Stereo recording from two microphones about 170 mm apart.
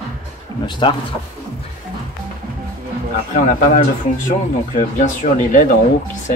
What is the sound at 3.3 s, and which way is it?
Speech, 50° left (ahead or behind).